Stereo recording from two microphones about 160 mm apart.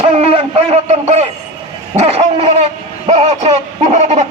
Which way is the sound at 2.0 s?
40° right (ahead or behind).